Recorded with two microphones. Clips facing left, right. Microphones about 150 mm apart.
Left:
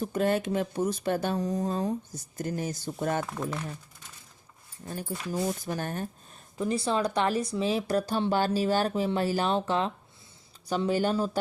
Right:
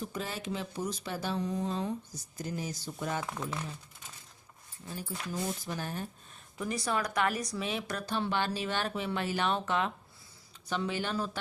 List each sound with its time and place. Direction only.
0.0 s speech: 55° left (ahead or behind)
4.9 s speech: 55° left (ahead or behind)
6.6 s speech: 30° left (ahead or behind)